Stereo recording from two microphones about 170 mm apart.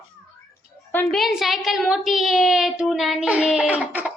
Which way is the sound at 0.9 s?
10° left (ahead or behind).